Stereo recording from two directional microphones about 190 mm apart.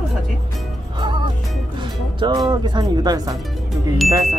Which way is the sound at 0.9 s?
25° right (ahead or behind).